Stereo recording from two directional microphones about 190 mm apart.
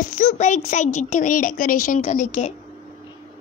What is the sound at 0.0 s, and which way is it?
A child's voice, 40° left (ahead or behind).